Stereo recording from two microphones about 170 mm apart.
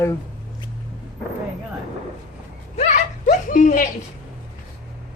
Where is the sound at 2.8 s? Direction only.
45° left (ahead or behind).